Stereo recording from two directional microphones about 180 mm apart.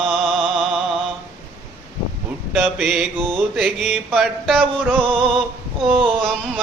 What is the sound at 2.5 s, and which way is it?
Mantra, 5° right (ahead or behind).